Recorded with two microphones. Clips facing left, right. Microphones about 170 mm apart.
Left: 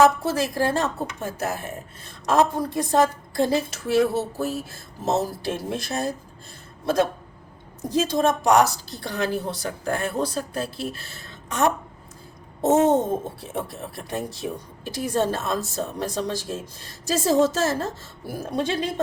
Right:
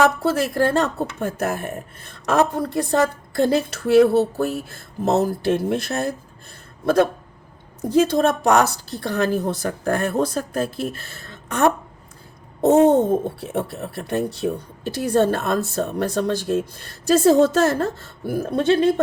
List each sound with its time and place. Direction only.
0.2 s a woman's voice: 60° right (ahead or behind)